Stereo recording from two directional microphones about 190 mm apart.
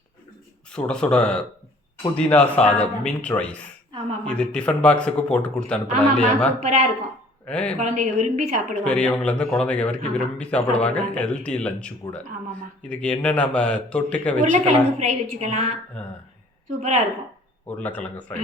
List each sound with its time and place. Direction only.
0.7 s a man's voice: 5° left (ahead or behind)
6.6 s a woman's voice: 35° right (ahead or behind)
7.4 s speech: 5° left (ahead or behind)
7.8 s a woman's voice: 40° right (ahead or behind)
8.7 s a man's voice: 5° left (ahead or behind)
14.3 s a woman's voice: 40° right (ahead or behind)
16.0 s speech: 5° left (ahead or behind)
17.7 s speech: 10° left (ahead or behind)